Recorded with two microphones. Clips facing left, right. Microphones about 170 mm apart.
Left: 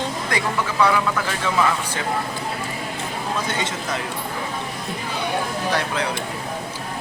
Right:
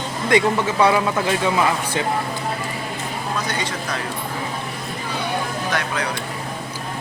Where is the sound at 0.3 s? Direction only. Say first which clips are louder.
Right 10 dB; 20° right (ahead or behind).